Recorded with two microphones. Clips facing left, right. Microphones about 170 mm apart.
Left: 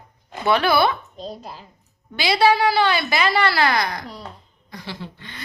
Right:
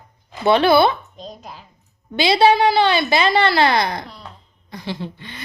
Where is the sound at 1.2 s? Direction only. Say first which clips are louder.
Left 3 dB; 35° left (ahead or behind).